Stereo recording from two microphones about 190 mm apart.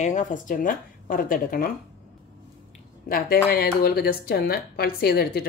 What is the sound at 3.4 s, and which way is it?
Speech, 55° left (ahead or behind).